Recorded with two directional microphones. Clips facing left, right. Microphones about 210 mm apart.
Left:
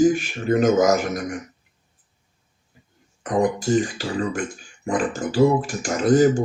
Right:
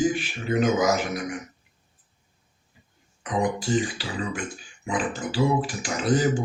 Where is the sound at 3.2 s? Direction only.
45° left (ahead or behind).